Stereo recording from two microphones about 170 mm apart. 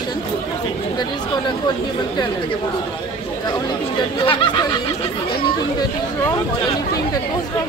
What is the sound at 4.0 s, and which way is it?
Speech, 30° left (ahead or behind).